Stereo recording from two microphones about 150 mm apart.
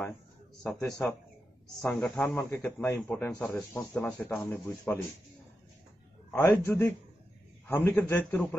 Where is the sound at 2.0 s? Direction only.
5° left (ahead or behind).